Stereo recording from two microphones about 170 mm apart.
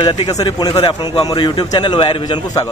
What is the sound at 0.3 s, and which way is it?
A man's voice, 25° left (ahead or behind).